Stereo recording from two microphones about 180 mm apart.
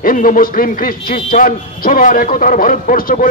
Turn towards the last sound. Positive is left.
turn(degrees=50)  # may be behind; listen again after turning